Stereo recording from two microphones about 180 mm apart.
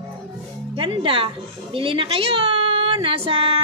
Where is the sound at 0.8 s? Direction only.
30° right (ahead or behind).